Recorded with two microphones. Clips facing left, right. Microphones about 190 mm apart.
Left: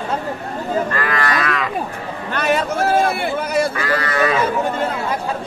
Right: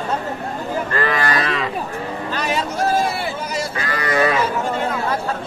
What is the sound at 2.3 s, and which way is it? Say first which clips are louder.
Vehicle: left 6 dB; 60° left (ahead or behind).